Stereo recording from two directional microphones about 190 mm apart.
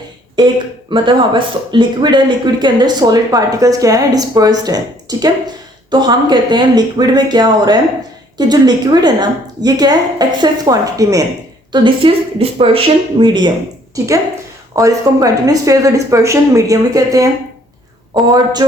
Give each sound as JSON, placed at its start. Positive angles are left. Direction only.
{"t": 0.3, "sound": "speech", "side_deg": -25}
{"t": 14.8, "sound": "speech", "side_deg": -20}